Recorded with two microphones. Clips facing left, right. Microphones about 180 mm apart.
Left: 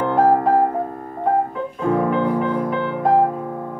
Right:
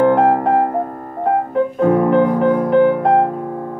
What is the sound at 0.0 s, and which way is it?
Piano, 55° right (ahead or behind).